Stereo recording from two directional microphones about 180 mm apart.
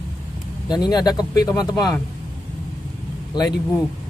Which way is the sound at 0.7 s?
25° left (ahead or behind).